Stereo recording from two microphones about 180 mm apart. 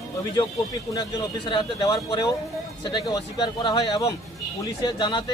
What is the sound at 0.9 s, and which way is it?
Speech, 25° left (ahead or behind).